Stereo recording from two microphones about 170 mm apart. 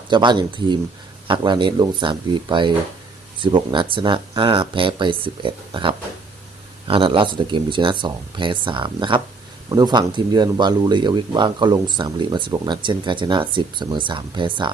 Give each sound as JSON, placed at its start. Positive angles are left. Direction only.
{"t": 0.1, "sound": "speech", "side_deg": -25}